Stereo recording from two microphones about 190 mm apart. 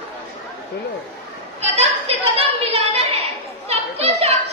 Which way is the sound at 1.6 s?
35° right (ahead or behind).